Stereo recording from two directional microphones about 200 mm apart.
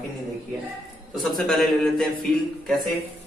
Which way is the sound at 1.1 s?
Centre (ahead or behind).